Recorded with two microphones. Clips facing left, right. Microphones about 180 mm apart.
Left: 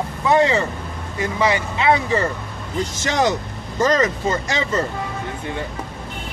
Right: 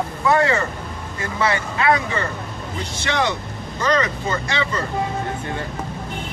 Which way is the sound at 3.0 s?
40° left (ahead or behind).